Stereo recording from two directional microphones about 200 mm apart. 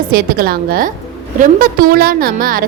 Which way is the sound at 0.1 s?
50° right (ahead or behind).